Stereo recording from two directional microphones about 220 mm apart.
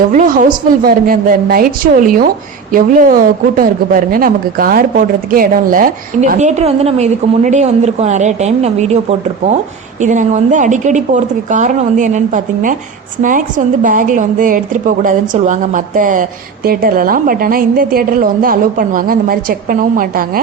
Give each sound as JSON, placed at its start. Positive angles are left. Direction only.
{"t": 0.1, "sound": "a woman's voice", "side_deg": -35}
{"t": 13.8, "sound": "a woman's voice", "side_deg": -35}